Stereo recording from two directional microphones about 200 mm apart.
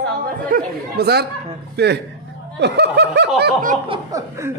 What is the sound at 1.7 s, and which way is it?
Snicker, 55° right (ahead or behind).